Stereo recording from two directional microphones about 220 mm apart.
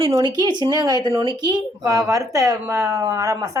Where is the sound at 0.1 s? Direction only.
20° right (ahead or behind).